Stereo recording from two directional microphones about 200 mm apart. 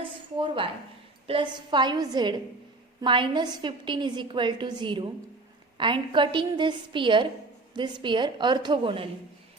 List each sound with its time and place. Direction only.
0.3 s a woman's voice: 25° right (ahead or behind)